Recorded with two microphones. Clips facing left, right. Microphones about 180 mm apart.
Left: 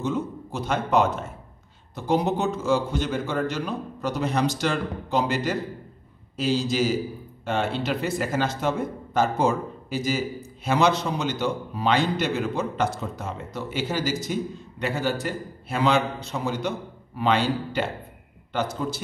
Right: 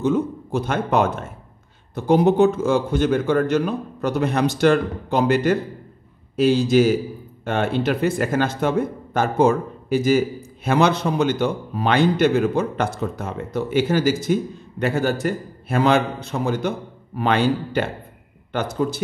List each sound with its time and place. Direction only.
0.0 s a man's voice: 55° right (ahead or behind)